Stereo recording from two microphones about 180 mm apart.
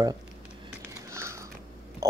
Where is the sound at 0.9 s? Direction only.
15° right (ahead or behind).